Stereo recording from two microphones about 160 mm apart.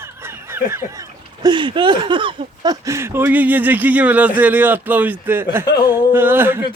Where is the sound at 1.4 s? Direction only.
30° right (ahead or behind); by 6.6 s 15° right (ahead or behind).